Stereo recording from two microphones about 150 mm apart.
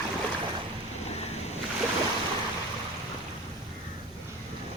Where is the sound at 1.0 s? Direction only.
45° left (ahead or behind).